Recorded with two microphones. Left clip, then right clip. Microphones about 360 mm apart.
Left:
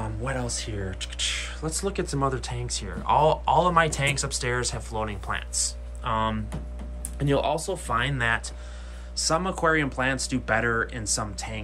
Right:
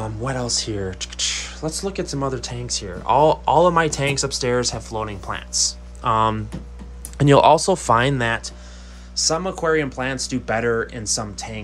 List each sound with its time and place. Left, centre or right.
0.0 s speech: centre